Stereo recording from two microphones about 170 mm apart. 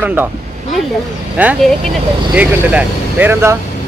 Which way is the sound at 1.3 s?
10° right (ahead or behind).